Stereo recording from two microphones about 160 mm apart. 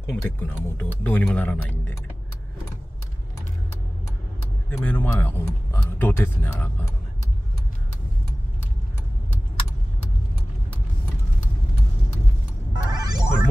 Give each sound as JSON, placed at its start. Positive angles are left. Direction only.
{"t": 0.1, "sound": "speech", "side_deg": 10}
{"t": 4.6, "sound": "speech", "side_deg": 10}
{"t": 12.7, "sound": "a sound", "side_deg": -25}